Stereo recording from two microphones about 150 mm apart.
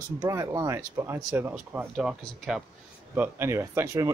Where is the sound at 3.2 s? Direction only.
20° right (ahead or behind).